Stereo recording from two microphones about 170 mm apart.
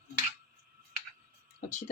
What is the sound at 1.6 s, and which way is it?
Speech, 50° left (ahead or behind).